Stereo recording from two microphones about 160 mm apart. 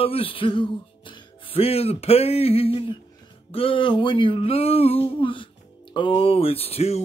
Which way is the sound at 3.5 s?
35° left (ahead or behind).